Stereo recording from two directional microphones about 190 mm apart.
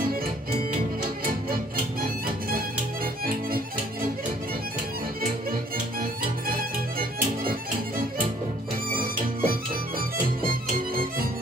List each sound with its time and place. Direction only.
1.2 s music: 50° right (ahead or behind)
5.2 s music: 50° right (ahead or behind)
8.9 s music: 50° right (ahead or behind)